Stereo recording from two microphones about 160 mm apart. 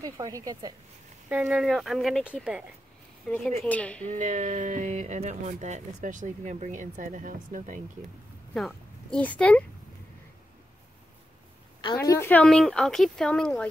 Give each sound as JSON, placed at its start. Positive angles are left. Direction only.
{"t": 0.0, "sound": "a woman's voice", "side_deg": -20}
{"t": 1.3, "sound": "speech", "side_deg": -5}
{"t": 3.3, "sound": "a woman's voice", "side_deg": 5}
{"t": 4.1, "sound": "speech", "side_deg": -55}
{"t": 8.5, "sound": "speech", "side_deg": 5}
{"t": 11.8, "sound": "speech", "side_deg": 25}